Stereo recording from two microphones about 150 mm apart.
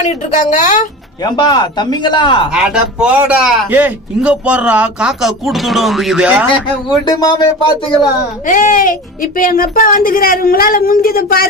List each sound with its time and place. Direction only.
0.0 s a woman's voice: 55° left (ahead or behind)
1.2 s speech: 30° left (ahead or behind)
2.5 s a man's voice: 5° right (ahead or behind)
7.1 s speech: 25° left (ahead or behind)
8.4 s speech: 60° left (ahead or behind); by 11.4 s 80° left